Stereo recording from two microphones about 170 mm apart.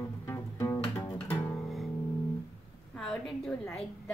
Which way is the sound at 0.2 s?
15° left (ahead or behind).